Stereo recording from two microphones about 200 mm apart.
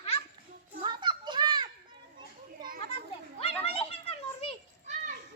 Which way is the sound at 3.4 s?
30° left (ahead or behind).